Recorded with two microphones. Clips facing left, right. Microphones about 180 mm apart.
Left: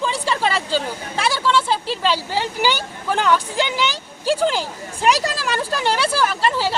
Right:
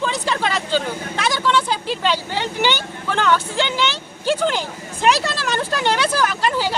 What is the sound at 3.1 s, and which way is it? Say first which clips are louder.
Speech: even; 5° left (ahead or behind).